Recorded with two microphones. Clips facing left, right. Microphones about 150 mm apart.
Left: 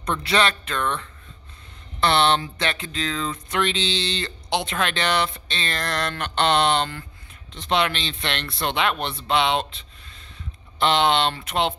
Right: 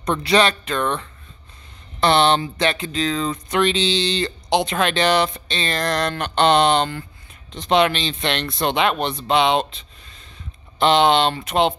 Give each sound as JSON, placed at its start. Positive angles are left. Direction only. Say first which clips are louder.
{"t": 0.2, "sound": "speech", "louder": "right 5 dB", "side_deg": -15}
{"t": 2.0, "sound": "speech", "louder": "right 3 dB", "side_deg": -15}
{"t": 10.8, "sound": "speech", "louder": "right 4 dB", "side_deg": -20}